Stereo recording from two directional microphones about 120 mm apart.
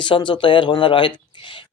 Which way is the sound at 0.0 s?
40° left (ahead or behind).